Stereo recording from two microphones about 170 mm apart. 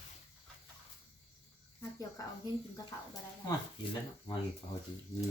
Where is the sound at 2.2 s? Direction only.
20° left (ahead or behind).